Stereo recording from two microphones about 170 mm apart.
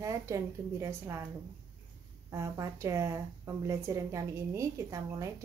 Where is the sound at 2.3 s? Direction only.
20° right (ahead or behind).